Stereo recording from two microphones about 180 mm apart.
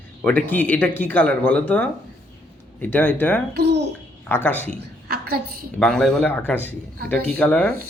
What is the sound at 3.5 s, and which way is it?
Speech, 65° right (ahead or behind).